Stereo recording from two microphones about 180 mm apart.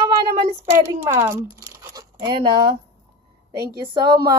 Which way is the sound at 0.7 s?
15° right (ahead or behind).